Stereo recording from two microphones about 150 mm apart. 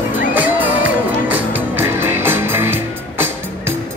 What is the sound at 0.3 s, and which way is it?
Music, 10° right (ahead or behind).